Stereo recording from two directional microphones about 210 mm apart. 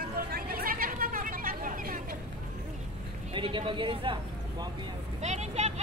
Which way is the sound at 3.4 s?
25° right (ahead or behind).